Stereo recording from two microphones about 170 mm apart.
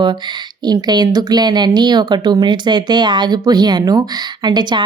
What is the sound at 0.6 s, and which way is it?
A woman's voice, 25° right (ahead or behind).